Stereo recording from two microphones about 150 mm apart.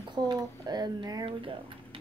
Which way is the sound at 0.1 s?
25° right (ahead or behind).